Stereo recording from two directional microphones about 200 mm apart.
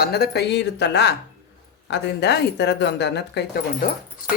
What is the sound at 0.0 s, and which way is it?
Speech, 55° left (ahead or behind).